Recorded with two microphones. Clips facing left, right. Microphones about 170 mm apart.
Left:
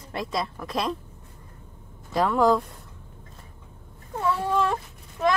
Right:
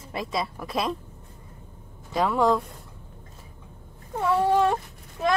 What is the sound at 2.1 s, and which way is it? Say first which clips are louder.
Speech: left 1 dB; centre (ahead or behind).